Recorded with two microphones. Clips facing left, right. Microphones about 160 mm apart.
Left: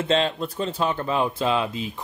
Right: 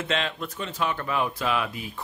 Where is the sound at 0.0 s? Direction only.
30° left (ahead or behind).